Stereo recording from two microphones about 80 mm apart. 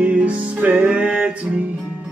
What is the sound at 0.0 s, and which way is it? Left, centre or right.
Music, centre.